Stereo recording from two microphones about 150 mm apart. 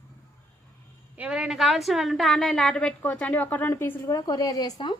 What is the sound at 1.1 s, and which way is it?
A woman's voice, 10° right (ahead or behind).